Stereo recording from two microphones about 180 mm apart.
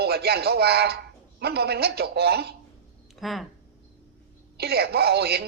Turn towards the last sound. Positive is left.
turn(degrees=-65)  # may be behind; listen again after turning